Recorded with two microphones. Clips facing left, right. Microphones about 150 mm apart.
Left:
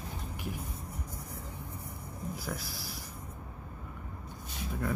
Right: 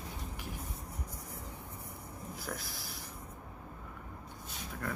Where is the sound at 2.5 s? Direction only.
5° left (ahead or behind).